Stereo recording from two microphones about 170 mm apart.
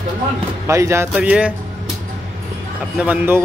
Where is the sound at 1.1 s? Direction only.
5° right (ahead or behind).